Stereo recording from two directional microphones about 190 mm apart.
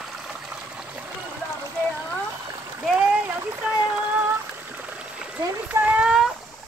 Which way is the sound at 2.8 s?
5° right (ahead or behind).